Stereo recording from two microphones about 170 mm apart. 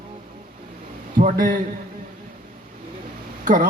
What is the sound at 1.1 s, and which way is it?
Speech, 55° right (ahead or behind).